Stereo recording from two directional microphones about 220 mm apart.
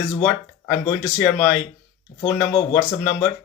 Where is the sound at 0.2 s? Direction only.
10° left (ahead or behind).